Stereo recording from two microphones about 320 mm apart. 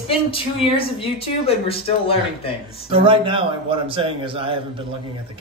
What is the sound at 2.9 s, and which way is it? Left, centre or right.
A man's voice, centre.